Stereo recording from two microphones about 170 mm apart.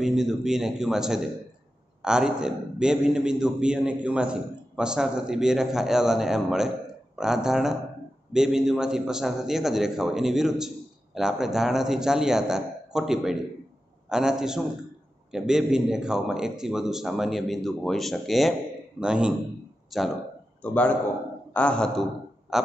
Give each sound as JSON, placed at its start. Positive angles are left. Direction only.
{"t": 0.0, "sound": "a man's voice", "side_deg": 0}